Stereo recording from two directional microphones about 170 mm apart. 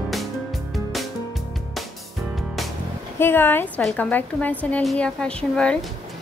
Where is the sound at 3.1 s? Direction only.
15° left (ahead or behind).